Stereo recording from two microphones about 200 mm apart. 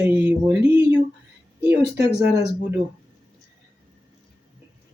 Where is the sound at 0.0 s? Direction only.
10° right (ahead or behind).